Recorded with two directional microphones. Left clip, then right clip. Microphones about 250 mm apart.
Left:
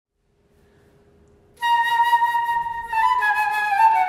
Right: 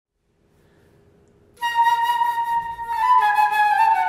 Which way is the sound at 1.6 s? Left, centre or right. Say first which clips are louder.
Even; right.